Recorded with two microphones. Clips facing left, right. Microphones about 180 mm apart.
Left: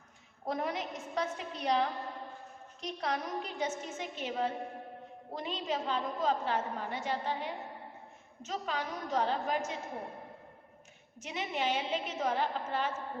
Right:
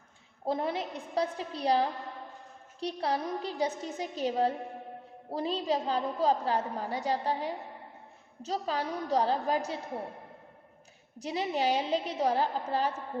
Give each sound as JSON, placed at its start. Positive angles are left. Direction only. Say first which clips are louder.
{"t": 0.4, "sound": "a woman's voice", "louder": "right 4 dB", "side_deg": -30}
{"t": 11.2, "sound": "a woman's voice", "louder": "right 5 dB", "side_deg": -35}